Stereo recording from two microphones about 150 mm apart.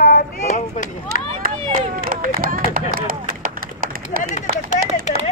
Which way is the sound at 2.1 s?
65° right (ahead or behind).